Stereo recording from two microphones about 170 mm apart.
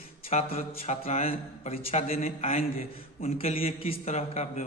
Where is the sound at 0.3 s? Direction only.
40° left (ahead or behind).